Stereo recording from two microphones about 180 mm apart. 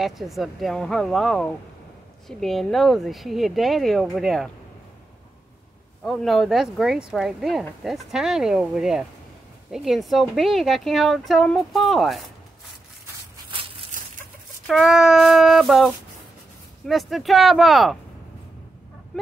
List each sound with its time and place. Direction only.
0.0 s speech: centre (ahead or behind)
6.0 s speech: centre (ahead or behind)
13.5 s a sound: 30° right (ahead or behind)
14.7 s speech: centre (ahead or behind)